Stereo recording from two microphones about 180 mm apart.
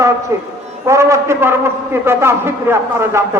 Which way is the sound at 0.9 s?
15° right (ahead or behind).